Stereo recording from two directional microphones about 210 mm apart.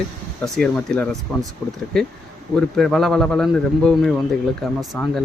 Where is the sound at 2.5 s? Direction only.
Centre (ahead or behind).